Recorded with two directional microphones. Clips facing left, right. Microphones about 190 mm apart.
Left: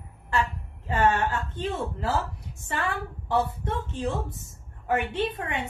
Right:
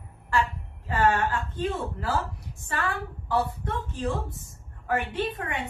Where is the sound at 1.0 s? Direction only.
25° left (ahead or behind).